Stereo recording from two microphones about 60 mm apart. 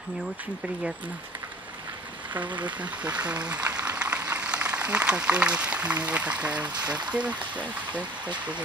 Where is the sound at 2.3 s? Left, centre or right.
Right.